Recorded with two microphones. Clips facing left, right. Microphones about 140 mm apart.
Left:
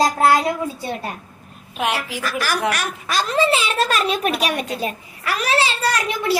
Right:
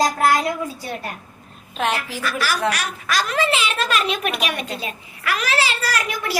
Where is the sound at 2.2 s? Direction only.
45° left (ahead or behind).